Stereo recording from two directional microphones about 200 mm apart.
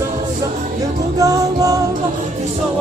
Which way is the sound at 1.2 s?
15° right (ahead or behind).